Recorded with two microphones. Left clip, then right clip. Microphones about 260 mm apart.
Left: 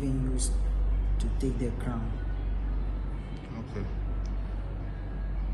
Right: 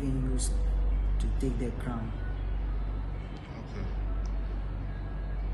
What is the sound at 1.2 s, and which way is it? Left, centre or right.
Speech, centre.